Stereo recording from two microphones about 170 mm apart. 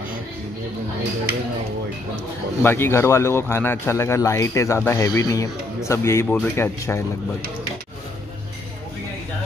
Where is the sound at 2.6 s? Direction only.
15° left (ahead or behind).